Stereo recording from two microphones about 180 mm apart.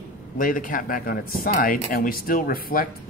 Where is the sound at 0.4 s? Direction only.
50° left (ahead or behind).